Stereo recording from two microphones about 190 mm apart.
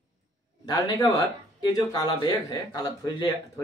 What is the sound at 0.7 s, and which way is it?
A man's voice, 20° left (ahead or behind).